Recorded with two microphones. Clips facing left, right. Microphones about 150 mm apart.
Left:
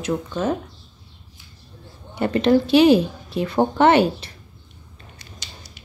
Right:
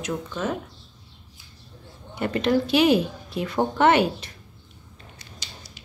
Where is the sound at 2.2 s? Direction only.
30° left (ahead or behind).